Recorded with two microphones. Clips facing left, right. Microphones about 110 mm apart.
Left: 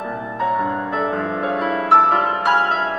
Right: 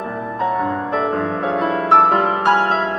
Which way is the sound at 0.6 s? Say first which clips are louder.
Right 1 dB; 30° right (ahead or behind).